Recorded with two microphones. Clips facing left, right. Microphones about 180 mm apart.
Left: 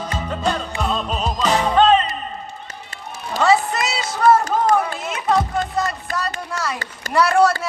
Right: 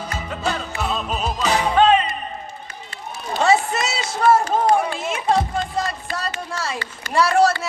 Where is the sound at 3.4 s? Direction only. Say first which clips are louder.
Left 1 dB; 25° right (ahead or behind).